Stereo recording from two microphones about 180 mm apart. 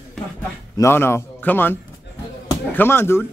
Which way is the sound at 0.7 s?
15° left (ahead or behind).